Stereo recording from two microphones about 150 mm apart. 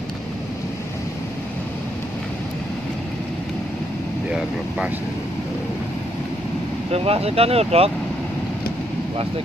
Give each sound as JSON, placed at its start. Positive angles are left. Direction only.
{"t": 4.3, "sound": "speech", "side_deg": -5}
{"t": 6.9, "sound": "speech", "side_deg": -40}